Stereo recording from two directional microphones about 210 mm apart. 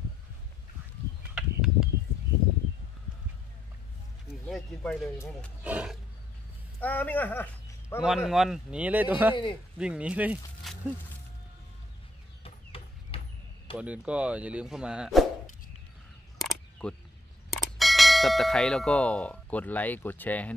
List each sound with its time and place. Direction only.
1.3 s a sound: 5° right (ahead or behind)
4.5 s speech: centre (ahead or behind)
5.6 s speech: 5° right (ahead or behind)
6.8 s speech: 10° left (ahead or behind)
8.0 s speech: centre (ahead or behind)
9.3 s a man's voice: 25° left (ahead or behind)
9.8 s speech: 5° right (ahead or behind)
12.4 s chicken: 25° left (ahead or behind)
13.7 s speech: 5° right (ahead or behind)
16.3 s a sound: centre (ahead or behind)
17.7 s speech: centre (ahead or behind)